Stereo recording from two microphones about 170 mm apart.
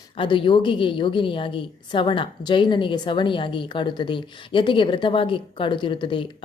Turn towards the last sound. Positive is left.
turn(degrees=30)  # may be behind; listen again after turning